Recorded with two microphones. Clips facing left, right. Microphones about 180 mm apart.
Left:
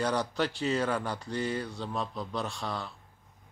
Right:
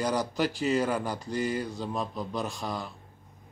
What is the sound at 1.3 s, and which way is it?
Mantra, 30° left (ahead or behind).